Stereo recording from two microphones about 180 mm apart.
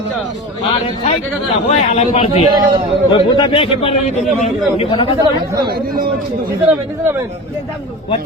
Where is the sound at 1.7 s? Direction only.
35° left (ahead or behind).